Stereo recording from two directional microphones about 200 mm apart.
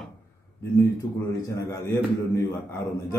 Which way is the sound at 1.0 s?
20° left (ahead or behind).